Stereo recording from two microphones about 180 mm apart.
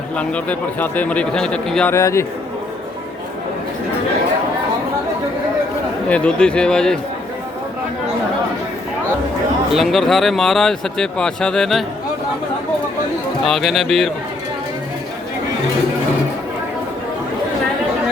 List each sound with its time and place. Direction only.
0.2 s speech: 5° left (ahead or behind)
1.9 s a man's voice: 15° left (ahead or behind)
6.1 s speech: 5° left (ahead or behind)
9.7 s speech: centre (ahead or behind)
13.4 s speech: centre (ahead or behind)